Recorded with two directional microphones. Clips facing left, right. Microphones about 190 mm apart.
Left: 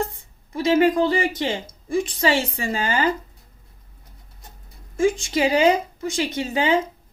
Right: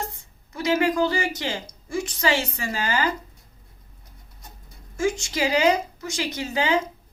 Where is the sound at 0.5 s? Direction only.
30° left (ahead or behind).